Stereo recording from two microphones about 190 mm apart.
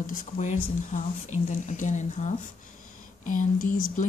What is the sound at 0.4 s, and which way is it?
Speech, 40° left (ahead or behind).